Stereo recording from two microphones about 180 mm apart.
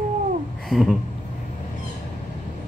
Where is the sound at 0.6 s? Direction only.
Centre (ahead or behind).